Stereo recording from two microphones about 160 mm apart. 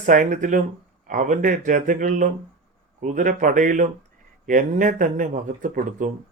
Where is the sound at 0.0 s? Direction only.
55° right (ahead or behind).